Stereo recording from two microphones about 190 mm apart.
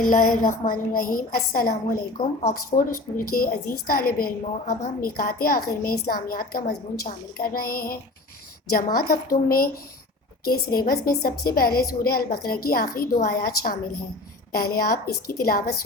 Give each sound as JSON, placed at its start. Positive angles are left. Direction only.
{"t": 0.0, "sound": "a woman's voice", "side_deg": 45}
{"t": 10.4, "sound": "a woman's voice", "side_deg": 50}